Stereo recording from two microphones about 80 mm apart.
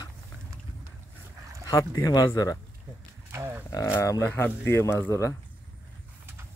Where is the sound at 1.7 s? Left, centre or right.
Left.